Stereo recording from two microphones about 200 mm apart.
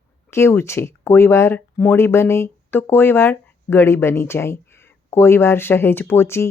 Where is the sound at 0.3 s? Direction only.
15° left (ahead or behind).